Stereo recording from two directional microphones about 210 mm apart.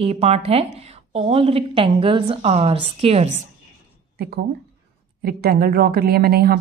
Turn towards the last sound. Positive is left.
turn(degrees=-45)  # may be behind; listen again after turning